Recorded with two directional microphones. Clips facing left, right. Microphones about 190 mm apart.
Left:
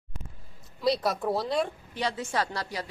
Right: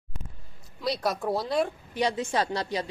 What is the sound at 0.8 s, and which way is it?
Speech, centre (ahead or behind).